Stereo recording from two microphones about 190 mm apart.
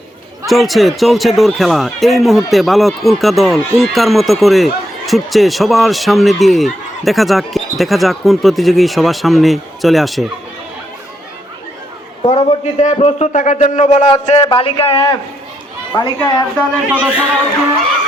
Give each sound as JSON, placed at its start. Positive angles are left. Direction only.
{"t": 0.4, "sound": "speech", "side_deg": 0}
{"t": 12.2, "sound": "a man's voice", "side_deg": 35}
{"t": 16.9, "sound": "a man's voice", "side_deg": -10}